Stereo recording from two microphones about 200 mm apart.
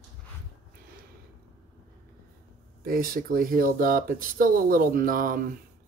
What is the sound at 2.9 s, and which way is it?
Speech, 45° right (ahead or behind).